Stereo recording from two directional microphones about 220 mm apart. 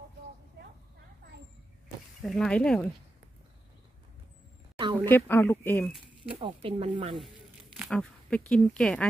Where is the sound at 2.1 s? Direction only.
Centre (ahead or behind).